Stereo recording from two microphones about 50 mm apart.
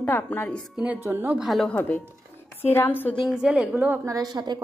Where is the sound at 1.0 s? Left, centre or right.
Right.